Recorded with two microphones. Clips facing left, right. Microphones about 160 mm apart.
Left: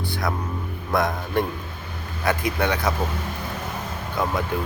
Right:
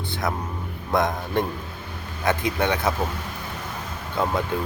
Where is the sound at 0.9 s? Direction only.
20° right (ahead or behind).